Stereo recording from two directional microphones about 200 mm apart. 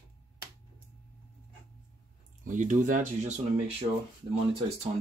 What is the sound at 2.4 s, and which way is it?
Speech, 40° right (ahead or behind).